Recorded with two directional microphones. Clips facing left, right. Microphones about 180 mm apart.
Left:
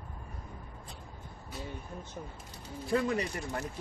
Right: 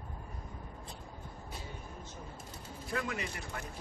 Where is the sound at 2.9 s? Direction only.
35° left (ahead or behind).